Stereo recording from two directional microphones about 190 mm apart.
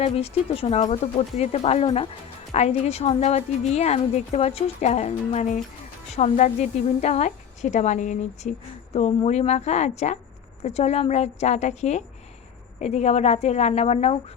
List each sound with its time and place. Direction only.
0.0 s a woman's voice: 30° left (ahead or behind)